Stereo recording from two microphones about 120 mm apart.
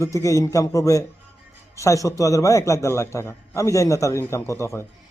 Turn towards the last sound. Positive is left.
turn(degrees=25)  # may be behind; listen again after turning